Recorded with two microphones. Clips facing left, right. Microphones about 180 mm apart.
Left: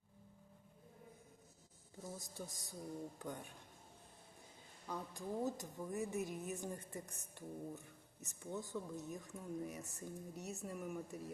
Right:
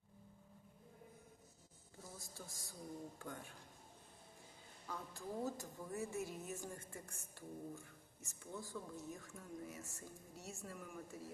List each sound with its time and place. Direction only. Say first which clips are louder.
2.1 s a woman's voice: left 5 dB; 20° left (ahead or behind)
4.9 s a woman's voice: left 3 dB; 15° left (ahead or behind)